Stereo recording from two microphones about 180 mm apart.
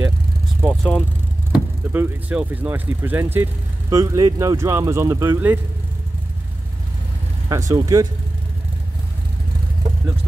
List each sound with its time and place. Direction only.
0.6 s vehicle: 10° right (ahead or behind)
1.5 s speech: 10° right (ahead or behind)
7.4 s speech: 20° right (ahead or behind)